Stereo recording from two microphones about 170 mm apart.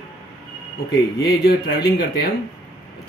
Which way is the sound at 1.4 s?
65° left (ahead or behind).